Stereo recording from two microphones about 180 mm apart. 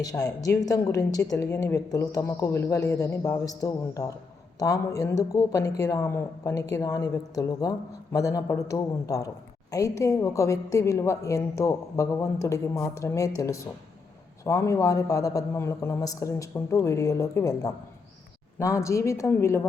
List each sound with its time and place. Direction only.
0.0 s a woman's voice: 20° left (ahead or behind)